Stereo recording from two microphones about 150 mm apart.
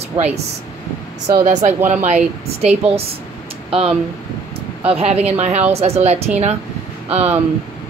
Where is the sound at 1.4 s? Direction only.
50° right (ahead or behind).